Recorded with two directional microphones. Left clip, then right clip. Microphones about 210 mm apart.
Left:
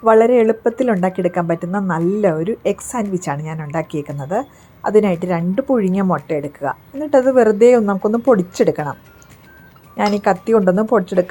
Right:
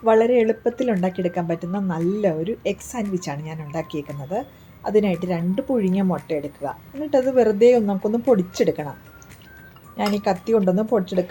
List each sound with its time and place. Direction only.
0.0 s speech: 15° left (ahead or behind)
10.0 s speech: 20° left (ahead or behind)